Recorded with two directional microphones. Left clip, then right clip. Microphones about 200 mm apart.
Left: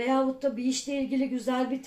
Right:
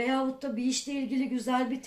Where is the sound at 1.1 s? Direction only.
35° right (ahead or behind).